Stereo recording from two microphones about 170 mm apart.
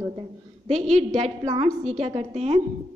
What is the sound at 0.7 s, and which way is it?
Speech, 40° right (ahead or behind).